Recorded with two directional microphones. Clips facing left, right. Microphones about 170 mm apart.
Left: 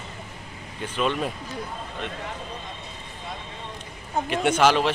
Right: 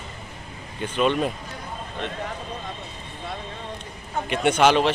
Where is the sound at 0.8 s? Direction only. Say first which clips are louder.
Right 4 dB; centre (ahead or behind).